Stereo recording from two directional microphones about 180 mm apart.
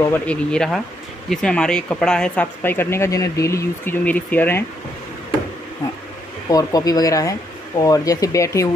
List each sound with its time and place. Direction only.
0.1 s speech: 5° left (ahead or behind)
6.5 s speech: 20° left (ahead or behind)